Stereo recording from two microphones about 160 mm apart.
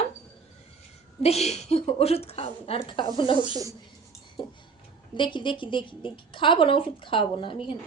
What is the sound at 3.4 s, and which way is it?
Speech, 25° right (ahead or behind).